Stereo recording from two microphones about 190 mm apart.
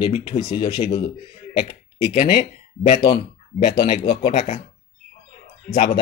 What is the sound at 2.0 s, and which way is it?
Speech, 30° left (ahead or behind).